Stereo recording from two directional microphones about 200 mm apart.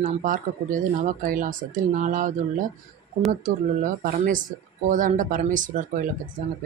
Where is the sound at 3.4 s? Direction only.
40° right (ahead or behind).